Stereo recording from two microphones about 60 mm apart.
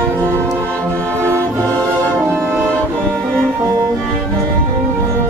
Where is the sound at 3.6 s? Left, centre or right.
Right.